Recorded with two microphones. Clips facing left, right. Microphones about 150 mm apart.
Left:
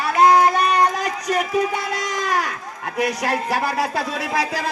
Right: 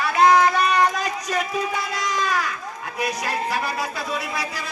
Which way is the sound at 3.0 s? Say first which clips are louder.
Left 4 dB; 75° left (ahead or behind).